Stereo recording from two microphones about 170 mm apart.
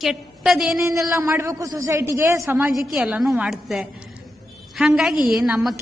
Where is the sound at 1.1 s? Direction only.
15° right (ahead or behind).